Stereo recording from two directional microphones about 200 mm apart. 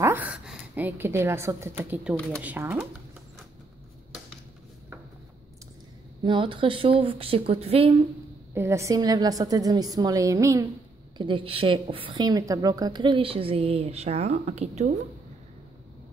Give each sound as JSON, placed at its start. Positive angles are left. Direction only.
{"t": 0.0, "sound": "a woman's voice", "side_deg": -10}
{"t": 2.1, "sound": "speech", "side_deg": 5}
{"t": 2.4, "sound": "a woman's voice", "side_deg": -10}
{"t": 6.2, "sound": "a woman's voice", "side_deg": -25}
{"t": 8.5, "sound": "a woman's voice", "side_deg": -15}